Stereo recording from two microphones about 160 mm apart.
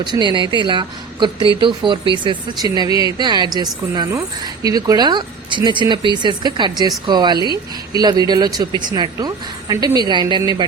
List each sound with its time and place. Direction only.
0.0 s speech: 25° right (ahead or behind)